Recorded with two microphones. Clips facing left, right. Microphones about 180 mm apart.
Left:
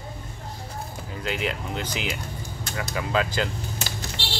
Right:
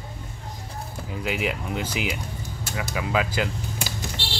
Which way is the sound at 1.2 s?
10° right (ahead or behind).